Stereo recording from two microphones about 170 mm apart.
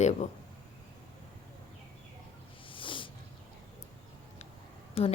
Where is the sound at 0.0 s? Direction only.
40° left (ahead or behind).